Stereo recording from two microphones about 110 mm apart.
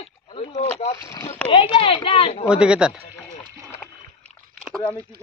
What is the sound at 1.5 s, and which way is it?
Speech, 55° left (ahead or behind).